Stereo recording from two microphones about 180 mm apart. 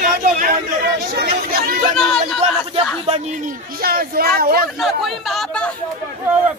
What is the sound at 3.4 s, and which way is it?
Speech, 55° right (ahead or behind).